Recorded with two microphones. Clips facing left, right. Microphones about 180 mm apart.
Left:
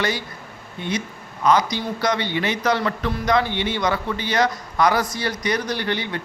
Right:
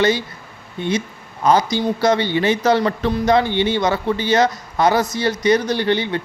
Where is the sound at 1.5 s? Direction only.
30° right (ahead or behind).